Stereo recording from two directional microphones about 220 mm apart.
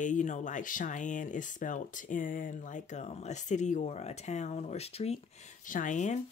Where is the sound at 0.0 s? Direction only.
35° left (ahead or behind).